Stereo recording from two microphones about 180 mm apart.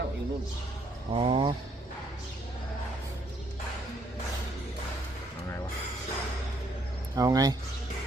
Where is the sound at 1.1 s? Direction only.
30° right (ahead or behind).